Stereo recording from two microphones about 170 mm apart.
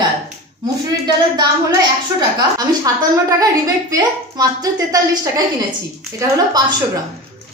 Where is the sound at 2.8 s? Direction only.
20° right (ahead or behind).